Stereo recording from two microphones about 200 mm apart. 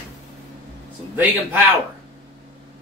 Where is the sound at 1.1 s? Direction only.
10° right (ahead or behind).